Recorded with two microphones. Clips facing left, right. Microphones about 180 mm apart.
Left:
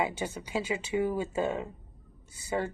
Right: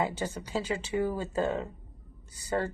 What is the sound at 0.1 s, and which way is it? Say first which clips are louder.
Speech: even; 10° left (ahead or behind).